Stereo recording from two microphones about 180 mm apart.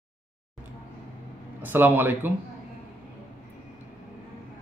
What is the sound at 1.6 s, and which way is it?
Speech, 10° right (ahead or behind).